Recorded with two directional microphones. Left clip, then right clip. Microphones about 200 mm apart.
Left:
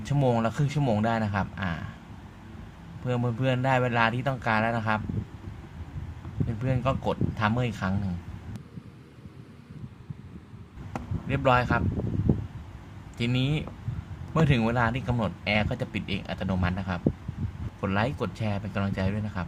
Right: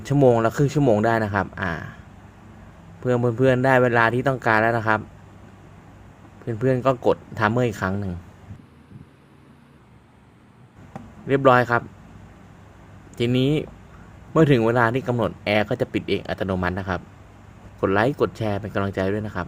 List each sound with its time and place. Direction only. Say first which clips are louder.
0.0 s speech: right 9 dB; 25° right (ahead or behind)
3.1 s speech: right 10 dB; 25° right (ahead or behind)
6.6 s speech: right 9 dB; 25° right (ahead or behind)
11.3 s speech: right 7 dB; 25° right (ahead or behind)
13.1 s speech: right 8 dB; 25° right (ahead or behind)